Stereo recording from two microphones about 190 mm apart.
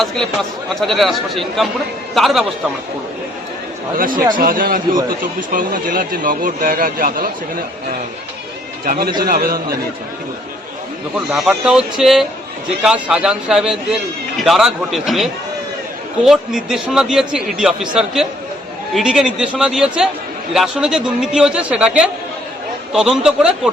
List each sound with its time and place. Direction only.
0.0 s a man's voice: centre (ahead or behind)
4.1 s speech: 25° right (ahead or behind)
4.4 s speech: 50° right (ahead or behind)
8.8 s speech: 50° right (ahead or behind)
11.3 s a man's voice: 5° right (ahead or behind)